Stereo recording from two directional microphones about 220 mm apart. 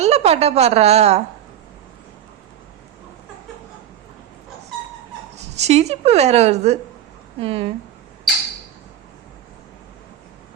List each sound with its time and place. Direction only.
0.0 s a woman's voice: 30° right (ahead or behind)
5.5 s a woman's voice: 30° right (ahead or behind)